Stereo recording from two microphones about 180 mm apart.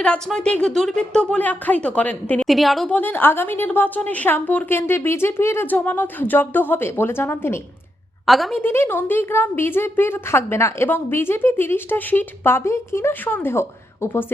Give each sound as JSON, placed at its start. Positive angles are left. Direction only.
{"t": 0.0, "sound": "a woman's voice", "side_deg": 5}
{"t": 8.3, "sound": "a woman's voice", "side_deg": 0}
{"t": 8.6, "sound": "a woman's voice", "side_deg": 15}